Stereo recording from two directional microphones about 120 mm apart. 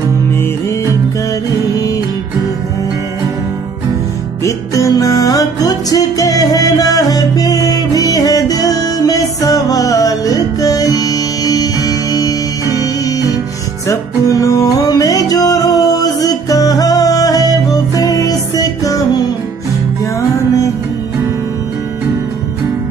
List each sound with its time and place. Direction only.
4.5 s music: 30° left (ahead or behind)
13.8 s music: 30° left (ahead or behind)